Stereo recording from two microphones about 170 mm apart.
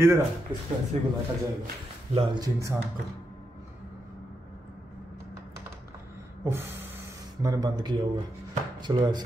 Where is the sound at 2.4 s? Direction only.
20° right (ahead or behind).